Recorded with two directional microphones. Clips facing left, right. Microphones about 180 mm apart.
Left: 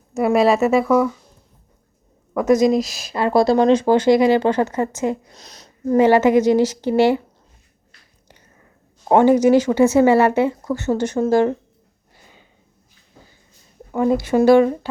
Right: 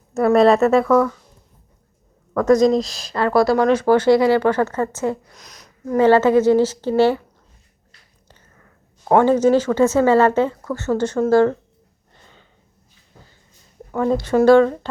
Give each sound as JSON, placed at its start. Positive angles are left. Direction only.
{"t": 0.2, "sound": "speech", "side_deg": 5}
{"t": 2.3, "sound": "speech", "side_deg": 15}
{"t": 3.2, "sound": "speech", "side_deg": 20}
{"t": 5.3, "sound": "a sound", "side_deg": 30}
{"t": 6.0, "sound": "speech", "side_deg": 15}
{"t": 8.3, "sound": "speech", "side_deg": 20}
{"t": 12.1, "sound": "a sound", "side_deg": 10}
{"t": 13.9, "sound": "speech", "side_deg": 15}